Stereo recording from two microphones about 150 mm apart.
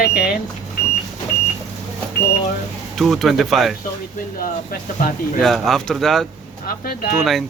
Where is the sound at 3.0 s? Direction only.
Centre (ahead or behind).